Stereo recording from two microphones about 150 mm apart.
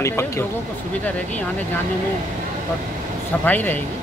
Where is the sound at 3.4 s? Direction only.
10° left (ahead or behind).